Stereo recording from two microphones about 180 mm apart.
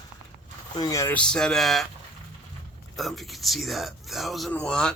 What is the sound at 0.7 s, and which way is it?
Speech, 20° left (ahead or behind).